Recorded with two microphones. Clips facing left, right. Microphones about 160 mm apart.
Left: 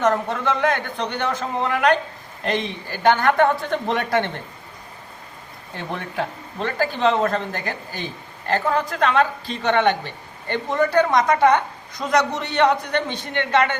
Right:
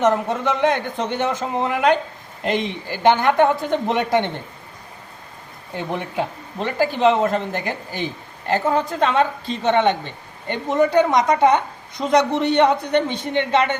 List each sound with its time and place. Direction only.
0.0 s speech: 20° right (ahead or behind)
5.7 s speech: 15° right (ahead or behind)